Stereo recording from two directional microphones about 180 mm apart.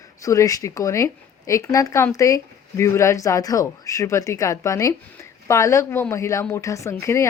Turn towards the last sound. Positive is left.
turn(degrees=15)  # may be behind; listen again after turning